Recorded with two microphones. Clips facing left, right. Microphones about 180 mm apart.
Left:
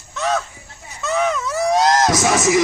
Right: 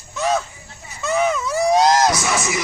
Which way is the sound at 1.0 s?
5° right (ahead or behind).